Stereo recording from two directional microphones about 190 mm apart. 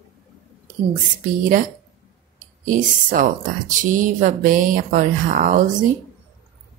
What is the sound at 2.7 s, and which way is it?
Speech, 45° right (ahead or behind).